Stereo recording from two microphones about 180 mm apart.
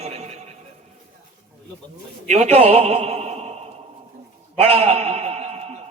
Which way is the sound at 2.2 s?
40° right (ahead or behind).